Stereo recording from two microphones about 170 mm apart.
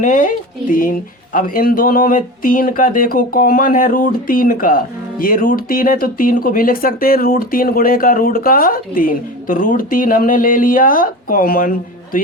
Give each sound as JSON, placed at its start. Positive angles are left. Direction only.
{"t": 0.0, "sound": "speech", "side_deg": 50}